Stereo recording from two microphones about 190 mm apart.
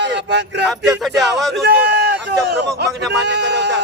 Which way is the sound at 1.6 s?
60° right (ahead or behind).